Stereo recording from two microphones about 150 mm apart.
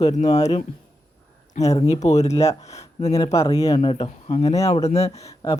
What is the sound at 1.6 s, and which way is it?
Music, 25° left (ahead or behind).